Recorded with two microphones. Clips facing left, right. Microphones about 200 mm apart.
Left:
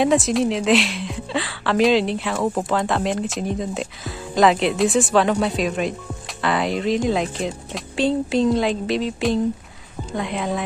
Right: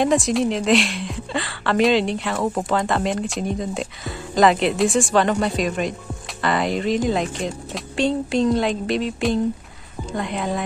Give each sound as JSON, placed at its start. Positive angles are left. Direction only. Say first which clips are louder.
{"t": 0.0, "sound": "a woman's voice", "louder": "left 1 dB", "side_deg": 0}